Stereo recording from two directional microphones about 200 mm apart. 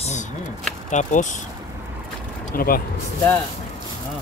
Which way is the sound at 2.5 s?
45° left (ahead or behind).